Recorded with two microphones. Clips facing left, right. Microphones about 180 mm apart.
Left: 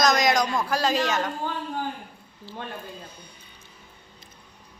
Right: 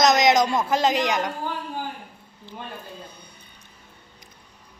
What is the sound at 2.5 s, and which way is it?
Speech, 20° right (ahead or behind).